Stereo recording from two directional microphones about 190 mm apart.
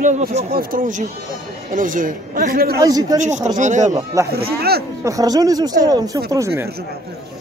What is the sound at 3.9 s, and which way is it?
Speech, 15° right (ahead or behind).